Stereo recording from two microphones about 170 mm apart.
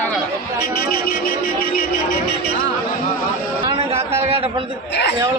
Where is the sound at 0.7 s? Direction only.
60° left (ahead or behind).